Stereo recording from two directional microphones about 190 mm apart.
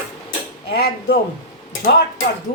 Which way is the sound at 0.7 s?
55° left (ahead or behind).